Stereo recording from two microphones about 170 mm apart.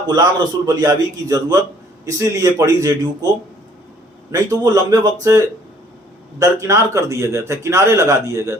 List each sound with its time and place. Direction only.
0.1 s a man's voice: 25° right (ahead or behind)
4.3 s a man's voice: 20° right (ahead or behind)
6.4 s a man's voice: 15° right (ahead or behind)